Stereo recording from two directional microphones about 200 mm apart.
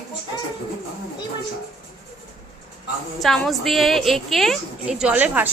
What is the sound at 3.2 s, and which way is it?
A woman's voice, centre (ahead or behind).